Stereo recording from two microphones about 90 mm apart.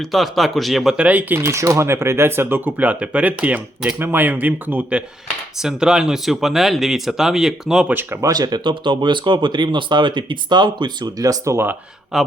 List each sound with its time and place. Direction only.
0.0 s speech: centre (ahead or behind)
0.9 s speech: 15° right (ahead or behind)
5.5 s speech: 5° right (ahead or behind)
8.2 s speech: 45° right (ahead or behind)
11.2 s speech: 35° right (ahead or behind)
12.1 s speech: 5° right (ahead or behind)